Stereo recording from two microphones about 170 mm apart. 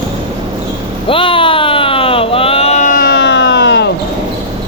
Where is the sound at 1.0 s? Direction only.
30° left (ahead or behind); by 3.9 s 90° left.